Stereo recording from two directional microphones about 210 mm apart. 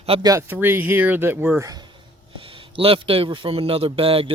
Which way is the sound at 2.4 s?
25° right (ahead or behind).